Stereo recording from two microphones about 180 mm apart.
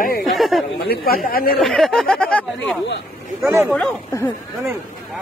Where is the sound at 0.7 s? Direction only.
55° left (ahead or behind).